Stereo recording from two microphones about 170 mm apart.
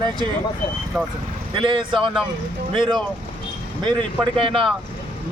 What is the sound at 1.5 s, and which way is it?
Speech, 30° right (ahead or behind).